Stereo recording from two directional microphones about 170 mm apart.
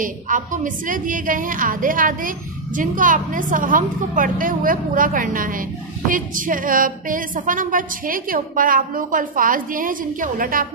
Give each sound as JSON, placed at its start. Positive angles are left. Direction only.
{"t": 0.0, "sound": "a woman's voice", "side_deg": -50}